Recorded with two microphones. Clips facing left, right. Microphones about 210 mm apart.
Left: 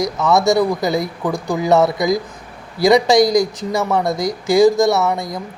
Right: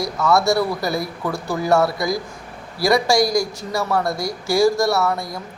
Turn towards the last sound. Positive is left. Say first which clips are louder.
# left 3 dB
turn(degrees=20)  # may be behind; listen again after turning